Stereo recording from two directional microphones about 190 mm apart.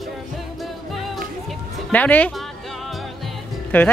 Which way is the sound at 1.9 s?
10° left (ahead or behind).